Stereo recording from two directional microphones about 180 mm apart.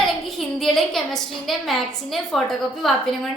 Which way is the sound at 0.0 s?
Centre (ahead or behind).